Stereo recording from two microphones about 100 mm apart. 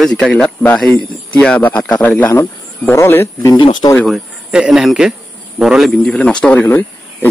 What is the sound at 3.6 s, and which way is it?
Speech, 50° left (ahead or behind).